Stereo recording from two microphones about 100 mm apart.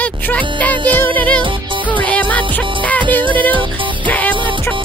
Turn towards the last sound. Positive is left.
turn(degrees=15)  # may be behind; listen again after turning